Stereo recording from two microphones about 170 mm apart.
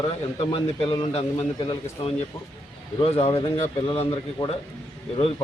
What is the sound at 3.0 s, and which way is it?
A man's voice, 35° left (ahead or behind).